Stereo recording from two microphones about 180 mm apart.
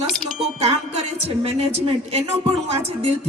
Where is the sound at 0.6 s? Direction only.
35° right (ahead or behind).